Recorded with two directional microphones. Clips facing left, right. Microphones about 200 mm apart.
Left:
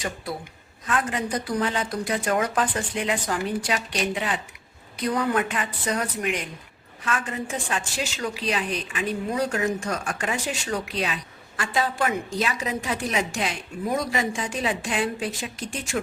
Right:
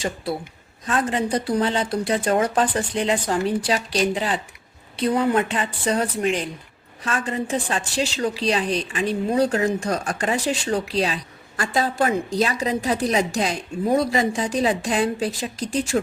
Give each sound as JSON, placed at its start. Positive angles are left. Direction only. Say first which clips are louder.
{"t": 0.9, "sound": "speech", "louder": "right 4 dB", "side_deg": -30}